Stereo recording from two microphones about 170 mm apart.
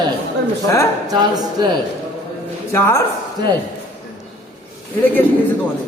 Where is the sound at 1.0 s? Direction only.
25° right (ahead or behind).